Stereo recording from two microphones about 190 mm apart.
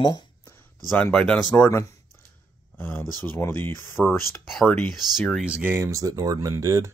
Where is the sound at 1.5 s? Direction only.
10° left (ahead or behind).